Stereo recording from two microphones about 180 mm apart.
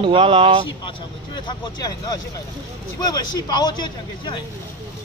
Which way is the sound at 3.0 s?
20° left (ahead or behind).